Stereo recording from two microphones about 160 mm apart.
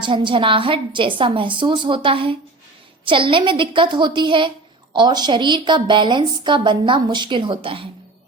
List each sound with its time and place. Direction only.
0.0 s a woman's voice: 30° right (ahead or behind)